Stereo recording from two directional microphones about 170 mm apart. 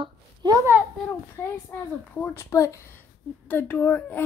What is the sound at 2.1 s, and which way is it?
Speech, 15° left (ahead or behind).